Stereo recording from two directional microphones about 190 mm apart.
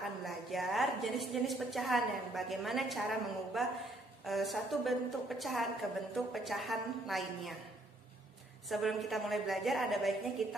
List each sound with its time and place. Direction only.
0.2 s a woman's voice: centre (ahead or behind)
8.6 s a woman's voice: centre (ahead or behind)